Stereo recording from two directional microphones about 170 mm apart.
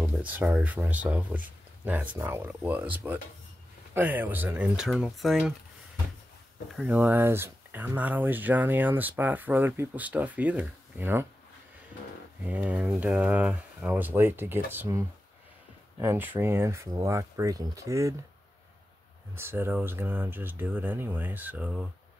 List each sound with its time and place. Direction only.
0.2 s speech: 10° right (ahead or behind)
6.7 s speech: 5° right (ahead or behind)
12.4 s speech: 10° right (ahead or behind)
19.3 s speech: 15° right (ahead or behind)